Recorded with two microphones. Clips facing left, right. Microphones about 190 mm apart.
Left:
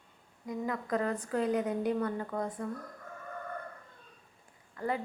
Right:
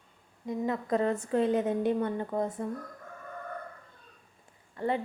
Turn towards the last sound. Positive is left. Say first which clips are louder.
# right 4 dB
turn(degrees=-25)  # may be behind; listen again after turning